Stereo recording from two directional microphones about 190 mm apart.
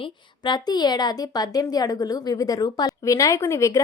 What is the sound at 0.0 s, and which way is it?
A woman's voice, 25° left (ahead or behind).